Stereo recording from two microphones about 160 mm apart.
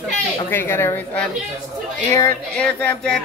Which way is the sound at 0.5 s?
15° left (ahead or behind).